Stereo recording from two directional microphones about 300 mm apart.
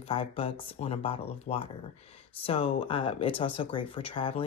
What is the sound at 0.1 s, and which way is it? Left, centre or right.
Speech, centre.